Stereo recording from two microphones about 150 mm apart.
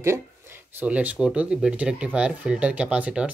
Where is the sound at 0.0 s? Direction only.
15° right (ahead or behind).